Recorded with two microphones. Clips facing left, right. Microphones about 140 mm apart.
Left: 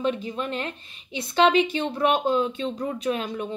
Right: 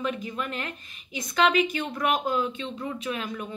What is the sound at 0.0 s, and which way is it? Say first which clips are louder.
Speech: left 4 dB; 30° left (ahead or behind).